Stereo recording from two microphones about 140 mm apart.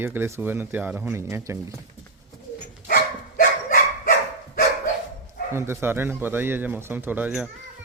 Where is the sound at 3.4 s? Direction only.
75° left (ahead or behind).